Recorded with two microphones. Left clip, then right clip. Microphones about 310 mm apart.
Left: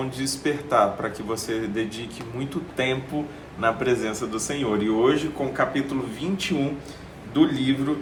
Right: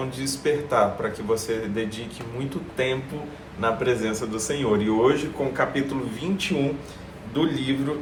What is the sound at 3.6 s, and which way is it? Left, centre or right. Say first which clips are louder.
A man's voice: left 1 dB; centre.